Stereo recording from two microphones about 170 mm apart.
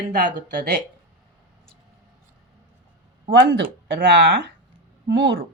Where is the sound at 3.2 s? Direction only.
90° right.